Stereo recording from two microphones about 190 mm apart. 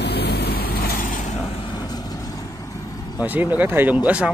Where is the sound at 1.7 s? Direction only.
20° left (ahead or behind).